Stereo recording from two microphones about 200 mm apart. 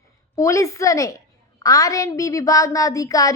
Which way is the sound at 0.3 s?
15° left (ahead or behind).